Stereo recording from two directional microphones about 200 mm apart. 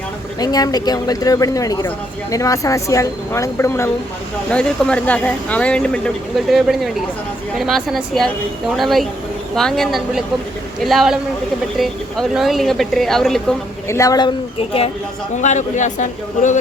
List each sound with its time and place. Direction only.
0.3 s a woman's voice: 20° left (ahead or behind); by 13.6 s centre (ahead or behind)
13.8 s speech: 15° left (ahead or behind)
15.4 s speech: 35° left (ahead or behind)